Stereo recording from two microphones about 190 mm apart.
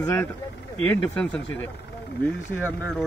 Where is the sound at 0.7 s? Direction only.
40° right (ahead or behind).